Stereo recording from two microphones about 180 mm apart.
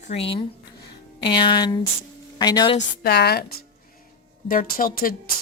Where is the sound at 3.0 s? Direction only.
60° left (ahead or behind).